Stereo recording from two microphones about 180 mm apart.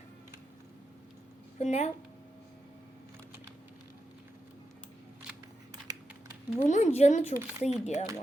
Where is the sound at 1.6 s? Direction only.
35° left (ahead or behind).